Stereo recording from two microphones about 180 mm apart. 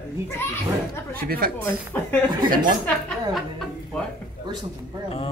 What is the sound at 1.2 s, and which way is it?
Speech, 55° right (ahead or behind).